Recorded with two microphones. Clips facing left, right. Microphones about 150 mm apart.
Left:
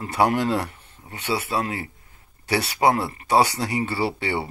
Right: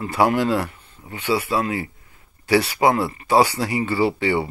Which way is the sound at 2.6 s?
40° left (ahead or behind).